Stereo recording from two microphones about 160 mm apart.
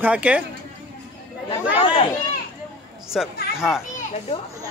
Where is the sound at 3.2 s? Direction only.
Centre (ahead or behind).